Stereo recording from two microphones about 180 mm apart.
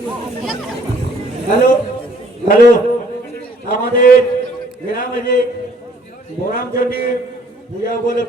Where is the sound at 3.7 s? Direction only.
55° left (ahead or behind).